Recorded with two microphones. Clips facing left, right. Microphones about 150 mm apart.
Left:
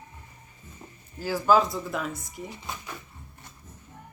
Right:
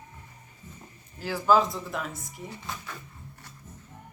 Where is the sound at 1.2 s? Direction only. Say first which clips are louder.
Left 1 dB; centre (ahead or behind).